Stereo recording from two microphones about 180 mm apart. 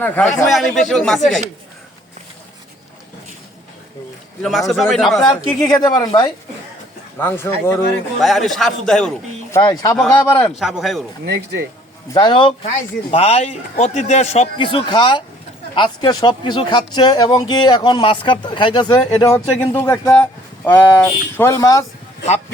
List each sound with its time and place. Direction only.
0.0 s speech: 5° left (ahead or behind)
4.7 s speech: centre (ahead or behind)
5.1 s speech: 15° left (ahead or behind)
8.2 s speech: centre (ahead or behind)
9.6 s speech: 20° left (ahead or behind)
10.6 s speech: centre (ahead or behind)
11.3 s speech: 70° right (ahead or behind)
12.1 s speech: 25° left (ahead or behind)